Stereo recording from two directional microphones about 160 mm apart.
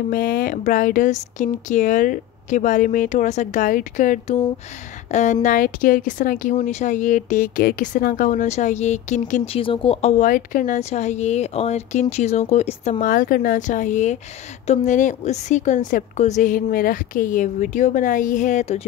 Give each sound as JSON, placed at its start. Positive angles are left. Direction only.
{"t": 0.1, "sound": "speech", "side_deg": 60}
{"t": 6.5, "sound": "speech", "side_deg": 45}
{"t": 13.0, "sound": "speech", "side_deg": 60}